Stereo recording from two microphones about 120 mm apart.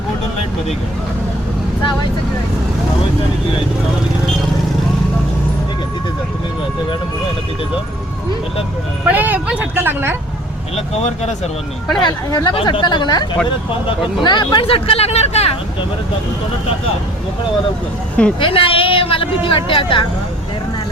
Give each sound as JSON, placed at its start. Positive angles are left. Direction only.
{"t": 9.0, "sound": "speech", "side_deg": -15}
{"t": 10.8, "sound": "speech", "side_deg": 60}
{"t": 12.0, "sound": "speech", "side_deg": 35}
{"t": 18.3, "sound": "speech", "side_deg": 45}